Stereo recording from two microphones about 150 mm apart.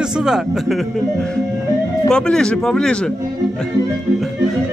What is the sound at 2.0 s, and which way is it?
Speech, 5° left (ahead or behind).